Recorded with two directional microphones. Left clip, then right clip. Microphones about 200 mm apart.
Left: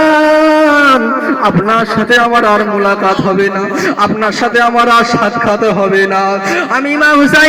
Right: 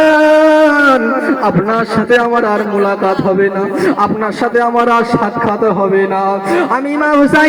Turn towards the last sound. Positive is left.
turn(degrees=35)  # may be behind; listen again after turning